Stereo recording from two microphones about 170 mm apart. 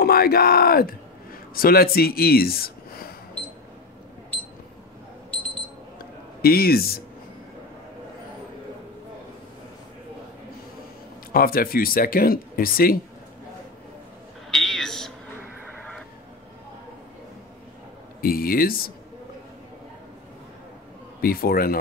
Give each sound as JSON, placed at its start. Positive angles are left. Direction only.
{"t": 0.0, "sound": "speech", "side_deg": 60}
{"t": 5.3, "sound": "alarm clock", "side_deg": 10}
{"t": 6.4, "sound": "speech", "side_deg": 65}
{"t": 11.3, "sound": "speech", "side_deg": 60}
{"t": 14.5, "sound": "a sound", "side_deg": 5}
{"t": 18.2, "sound": "speech", "side_deg": 60}
{"t": 21.2, "sound": "speech", "side_deg": 60}